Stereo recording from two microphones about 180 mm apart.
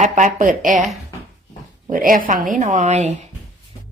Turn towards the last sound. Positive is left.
turn(degrees=-40)  # may be behind; listen again after turning